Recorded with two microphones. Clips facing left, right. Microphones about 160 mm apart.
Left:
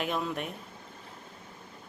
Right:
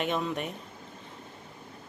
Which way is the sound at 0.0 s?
Centre (ahead or behind).